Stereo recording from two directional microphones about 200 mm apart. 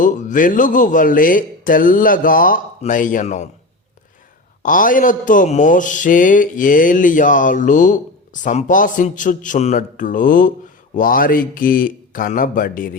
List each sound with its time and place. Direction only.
0.0 s speech: 40° left (ahead or behind)
4.6 s speech: 40° left (ahead or behind)